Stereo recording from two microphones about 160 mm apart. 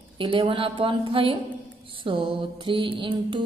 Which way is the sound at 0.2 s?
30° right (ahead or behind).